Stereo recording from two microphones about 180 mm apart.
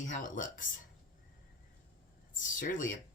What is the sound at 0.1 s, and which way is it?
Speech, 45° left (ahead or behind).